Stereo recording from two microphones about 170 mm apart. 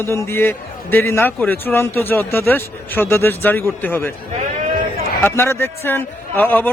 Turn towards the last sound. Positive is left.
turn(degrees=10)  # may be behind; listen again after turning